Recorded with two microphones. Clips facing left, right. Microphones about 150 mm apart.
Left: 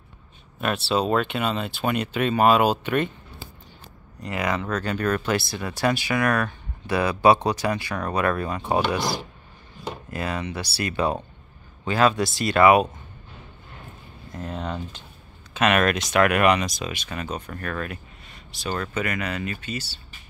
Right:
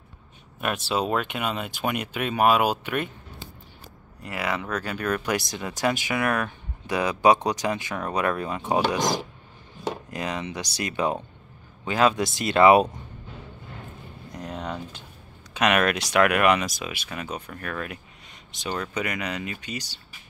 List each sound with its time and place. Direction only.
0.6 s speech: 10° right (ahead or behind)
4.2 s speech: 10° right (ahead or behind); by 12.8 s 25° right (ahead or behind)
14.3 s typing: 10° right (ahead or behind)
15.5 s speech: 15° right (ahead or behind)